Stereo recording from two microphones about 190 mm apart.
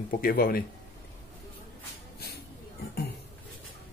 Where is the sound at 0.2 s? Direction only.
50° left (ahead or behind).